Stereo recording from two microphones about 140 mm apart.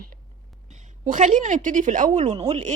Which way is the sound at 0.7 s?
60° right (ahead or behind).